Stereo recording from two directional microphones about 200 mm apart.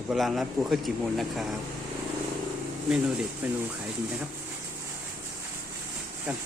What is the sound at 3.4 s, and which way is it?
Speech, 5° right (ahead or behind).